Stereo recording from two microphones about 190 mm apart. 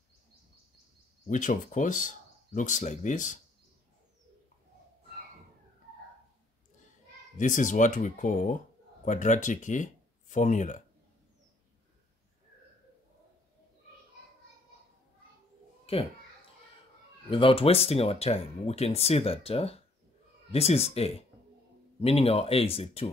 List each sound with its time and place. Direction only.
1.2 s speech: 40° left (ahead or behind)
7.3 s speech: 40° left (ahead or behind)
15.8 s a sound: 30° left (ahead or behind)
17.3 s speech: 30° left (ahead or behind)